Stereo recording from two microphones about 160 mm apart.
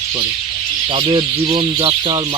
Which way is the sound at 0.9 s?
35° right (ahead or behind).